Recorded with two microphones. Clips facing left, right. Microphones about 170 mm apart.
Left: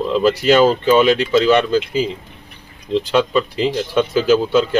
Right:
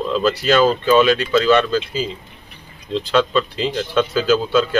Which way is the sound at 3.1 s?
15° left (ahead or behind).